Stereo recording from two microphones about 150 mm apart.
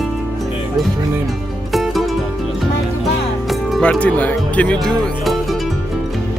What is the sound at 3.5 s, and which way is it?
Music, centre (ahead or behind).